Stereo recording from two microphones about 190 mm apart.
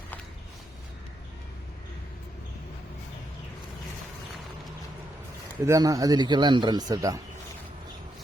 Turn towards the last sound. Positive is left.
turn(degrees=-20)  # may be behind; listen again after turning